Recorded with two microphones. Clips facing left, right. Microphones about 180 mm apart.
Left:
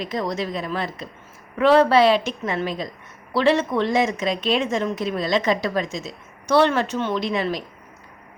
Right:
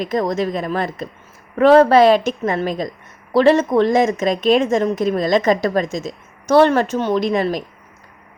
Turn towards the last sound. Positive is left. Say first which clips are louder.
# right 6 dB
turn(degrees=-45)  # may be behind; listen again after turning